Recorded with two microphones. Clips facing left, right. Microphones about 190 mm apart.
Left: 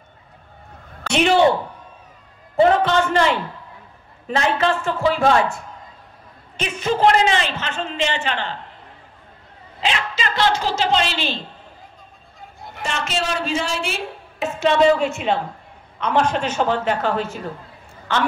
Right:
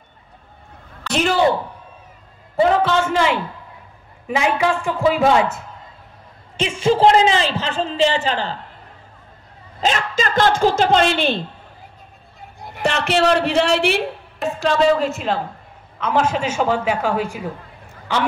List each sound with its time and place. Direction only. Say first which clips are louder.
2.5 s a sound: left 1 dB; 10° right (ahead or behind)
4.3 s a woman's voice: right 1 dB; 10° right (ahead or behind)
6.5 s a man's voice: right 5 dB; 25° right (ahead or behind)
9.8 s a woman's voice: right 4 dB; 45° right (ahead or behind)
12.8 s speech: right 8 dB; 65° right (ahead or behind)
14.4 s a woman's voice: left 1 dB; centre (ahead or behind)